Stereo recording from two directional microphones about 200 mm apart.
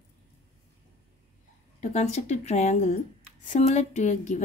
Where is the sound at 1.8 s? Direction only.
35° left (ahead or behind).